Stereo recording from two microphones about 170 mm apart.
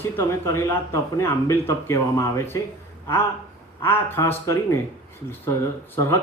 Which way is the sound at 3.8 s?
15° left (ahead or behind).